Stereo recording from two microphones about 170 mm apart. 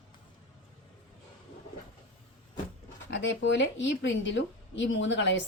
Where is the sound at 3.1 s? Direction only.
90° left.